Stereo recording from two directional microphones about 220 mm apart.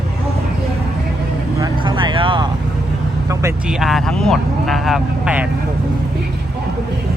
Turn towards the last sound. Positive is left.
turn(degrees=-5)  # may be behind; listen again after turning